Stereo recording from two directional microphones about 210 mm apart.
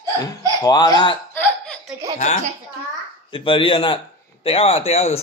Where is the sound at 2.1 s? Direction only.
35° left (ahead or behind).